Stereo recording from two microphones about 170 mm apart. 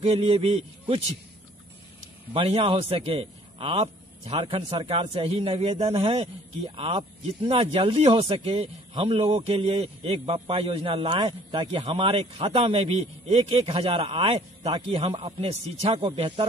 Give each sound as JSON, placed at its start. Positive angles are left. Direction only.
{"t": 0.1, "sound": "a man's voice", "side_deg": -35}
{"t": 2.3, "sound": "a man's voice", "side_deg": -35}